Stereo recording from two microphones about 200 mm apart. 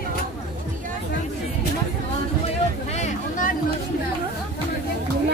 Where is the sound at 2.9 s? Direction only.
40° left (ahead or behind).